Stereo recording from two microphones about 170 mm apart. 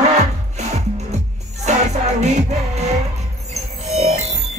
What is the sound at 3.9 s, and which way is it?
Music, 40° right (ahead or behind).